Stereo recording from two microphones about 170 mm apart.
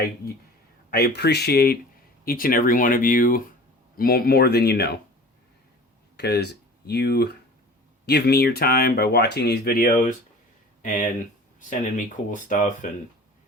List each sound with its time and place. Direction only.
0.9 s speech: 65° left (ahead or behind)
6.1 s speech: 75° left (ahead or behind)
9.9 s speech: 50° left (ahead or behind)